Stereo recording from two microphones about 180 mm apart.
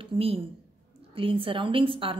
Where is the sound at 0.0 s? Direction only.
30° right (ahead or behind).